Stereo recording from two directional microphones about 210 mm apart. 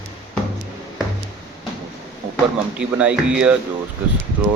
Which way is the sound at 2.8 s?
5° right (ahead or behind).